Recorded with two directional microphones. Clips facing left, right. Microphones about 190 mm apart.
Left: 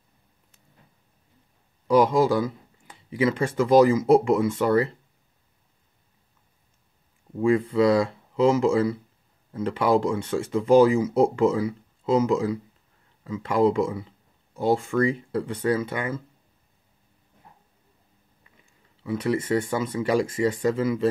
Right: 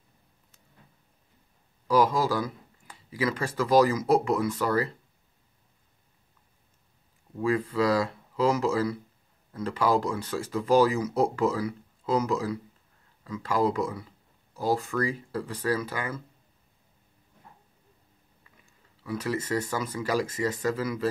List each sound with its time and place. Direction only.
1.9 s speech: 25° left (ahead or behind)
7.3 s speech: 25° left (ahead or behind)
19.0 s speech: 25° left (ahead or behind)